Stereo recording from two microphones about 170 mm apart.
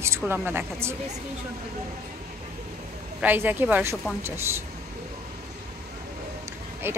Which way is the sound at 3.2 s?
10° right (ahead or behind).